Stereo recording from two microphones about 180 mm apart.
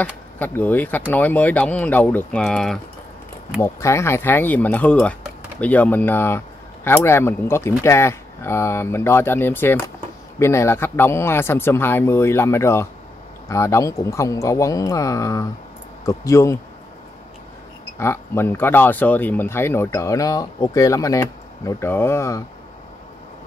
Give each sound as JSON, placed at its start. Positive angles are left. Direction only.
{"t": 0.0, "sound": "speech", "side_deg": 10}
{"t": 3.6, "sound": "speech", "side_deg": 15}
{"t": 17.9, "sound": "speech", "side_deg": 15}